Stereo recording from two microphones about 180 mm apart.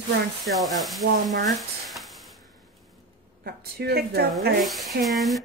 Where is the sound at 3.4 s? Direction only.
60° right (ahead or behind).